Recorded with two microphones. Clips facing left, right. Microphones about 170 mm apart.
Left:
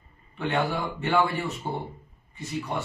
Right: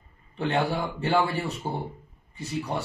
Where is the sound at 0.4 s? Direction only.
35° right (ahead or behind).